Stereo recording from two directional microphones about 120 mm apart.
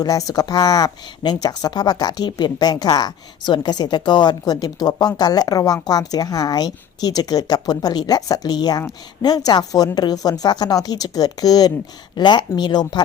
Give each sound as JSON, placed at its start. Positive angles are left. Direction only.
{"t": 0.0, "sound": "speech", "side_deg": 30}